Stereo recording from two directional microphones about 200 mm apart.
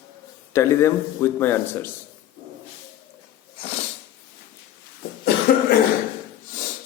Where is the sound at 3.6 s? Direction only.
30° left (ahead or behind).